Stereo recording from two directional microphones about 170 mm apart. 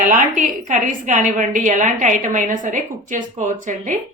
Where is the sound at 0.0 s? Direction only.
50° right (ahead or behind).